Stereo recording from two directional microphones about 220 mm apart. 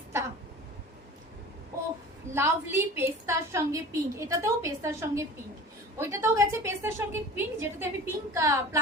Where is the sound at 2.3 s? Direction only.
10° right (ahead or behind).